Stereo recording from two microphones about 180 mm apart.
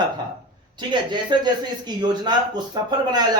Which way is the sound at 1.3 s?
25° right (ahead or behind).